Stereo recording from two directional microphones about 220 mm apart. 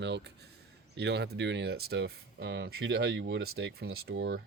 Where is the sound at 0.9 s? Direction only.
50° right (ahead or behind).